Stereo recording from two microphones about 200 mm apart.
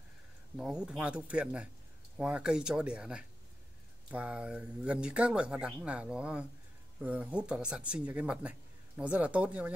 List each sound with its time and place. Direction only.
0.6 s speech: 5° right (ahead or behind)